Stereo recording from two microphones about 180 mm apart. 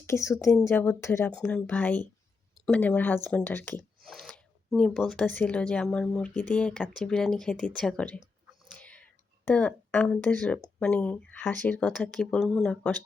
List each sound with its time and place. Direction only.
0.0 s speech: 15° left (ahead or behind)
8.7 s whispering: 5° left (ahead or behind)
10.8 s speech: 5° left (ahead or behind)